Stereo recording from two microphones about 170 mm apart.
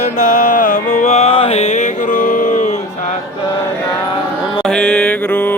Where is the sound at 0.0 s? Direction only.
45° left (ahead or behind).